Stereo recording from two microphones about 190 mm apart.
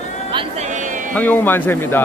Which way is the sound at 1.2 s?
10° left (ahead or behind).